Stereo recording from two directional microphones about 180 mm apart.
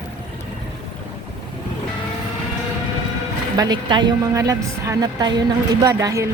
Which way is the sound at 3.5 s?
20° right (ahead or behind).